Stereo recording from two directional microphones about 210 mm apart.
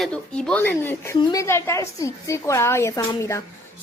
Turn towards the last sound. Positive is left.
turn(degrees=15)  # may be behind; listen again after turning